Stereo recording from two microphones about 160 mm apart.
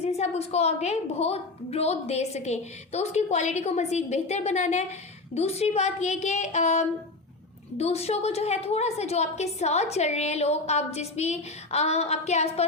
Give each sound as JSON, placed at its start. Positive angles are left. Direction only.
{"t": 0.0, "sound": "a woman's voice", "side_deg": 40}